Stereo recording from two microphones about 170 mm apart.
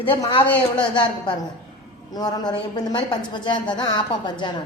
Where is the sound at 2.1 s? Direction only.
25° left (ahead or behind).